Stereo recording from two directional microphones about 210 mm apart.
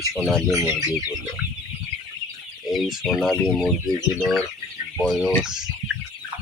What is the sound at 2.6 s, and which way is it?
Speech, centre (ahead or behind).